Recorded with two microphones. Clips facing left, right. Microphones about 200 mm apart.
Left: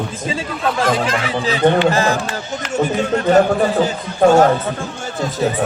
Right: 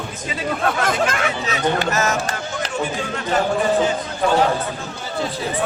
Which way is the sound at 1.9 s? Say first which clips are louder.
Left 4 dB; 30° left (ahead or behind).